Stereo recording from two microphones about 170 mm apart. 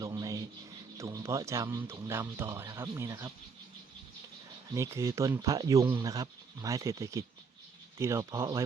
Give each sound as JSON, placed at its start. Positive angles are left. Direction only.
{"t": 0.0, "sound": "a sound", "side_deg": -20}
{"t": 0.9, "sound": "speech", "side_deg": -15}
{"t": 4.7, "sound": "speech", "side_deg": -15}